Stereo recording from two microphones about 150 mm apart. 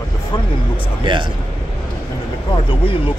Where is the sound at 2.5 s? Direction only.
35° left (ahead or behind).